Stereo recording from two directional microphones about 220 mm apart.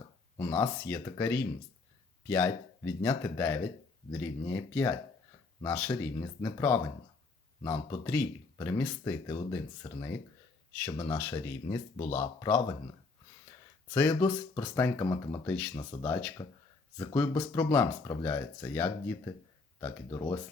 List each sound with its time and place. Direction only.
0.3 s speech: 10° left (ahead or behind)
11.2 s speech: 10° left (ahead or behind)
13.9 s speech: 10° left (ahead or behind)